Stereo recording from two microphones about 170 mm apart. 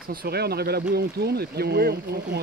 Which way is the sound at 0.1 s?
65° right (ahead or behind).